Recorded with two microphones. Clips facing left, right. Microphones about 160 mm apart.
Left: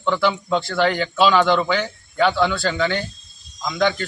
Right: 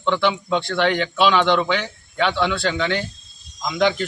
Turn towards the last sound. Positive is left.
turn(degrees=-5)  # may be behind; listen again after turning